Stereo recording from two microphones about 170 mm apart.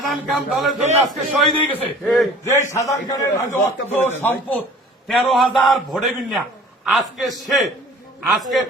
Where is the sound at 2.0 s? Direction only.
Centre (ahead or behind).